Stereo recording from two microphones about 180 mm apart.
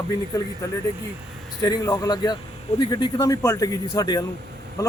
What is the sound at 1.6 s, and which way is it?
A man's voice, 20° left (ahead or behind).